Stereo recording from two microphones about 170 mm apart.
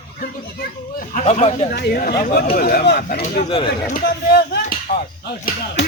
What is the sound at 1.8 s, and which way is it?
Speech, 65° left (ahead or behind).